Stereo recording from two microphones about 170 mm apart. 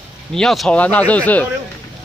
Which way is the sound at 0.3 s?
Centre (ahead or behind).